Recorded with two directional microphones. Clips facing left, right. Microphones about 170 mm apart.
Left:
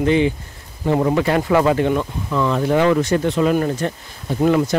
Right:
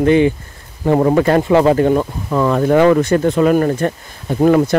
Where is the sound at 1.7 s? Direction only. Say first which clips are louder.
Right 5 dB; 40° right (ahead or behind).